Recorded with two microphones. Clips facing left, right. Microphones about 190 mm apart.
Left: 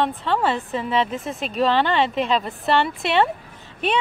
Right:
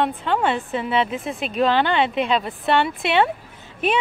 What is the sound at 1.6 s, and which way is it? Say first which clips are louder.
Speech: even; centre (ahead or behind).